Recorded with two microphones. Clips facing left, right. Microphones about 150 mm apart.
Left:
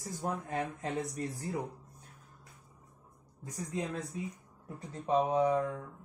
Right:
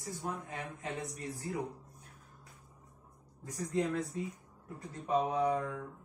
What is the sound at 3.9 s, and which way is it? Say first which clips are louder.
A man's voice: right 2 dB; 20° left (ahead or behind).